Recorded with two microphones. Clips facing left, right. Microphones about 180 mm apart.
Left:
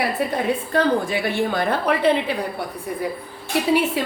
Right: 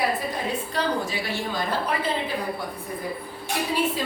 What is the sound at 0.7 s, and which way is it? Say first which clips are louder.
A woman's voice: left 8 dB; 55° left (ahead or behind).